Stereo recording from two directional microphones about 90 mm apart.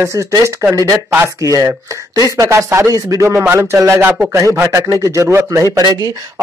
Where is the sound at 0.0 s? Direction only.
35° right (ahead or behind).